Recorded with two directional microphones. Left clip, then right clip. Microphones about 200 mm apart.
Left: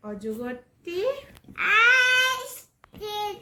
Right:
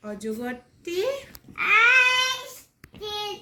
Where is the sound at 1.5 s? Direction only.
5° left (ahead or behind).